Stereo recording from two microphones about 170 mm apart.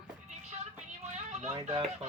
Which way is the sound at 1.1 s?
45° right (ahead or behind).